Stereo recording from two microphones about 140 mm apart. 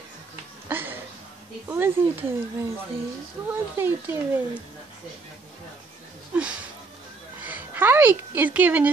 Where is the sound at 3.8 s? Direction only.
15° right (ahead or behind).